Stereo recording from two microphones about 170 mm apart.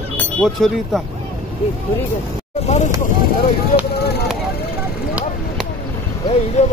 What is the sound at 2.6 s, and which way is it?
Speech, 40° left (ahead or behind).